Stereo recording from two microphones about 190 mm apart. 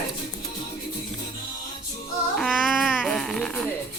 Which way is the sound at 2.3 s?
Centre (ahead or behind).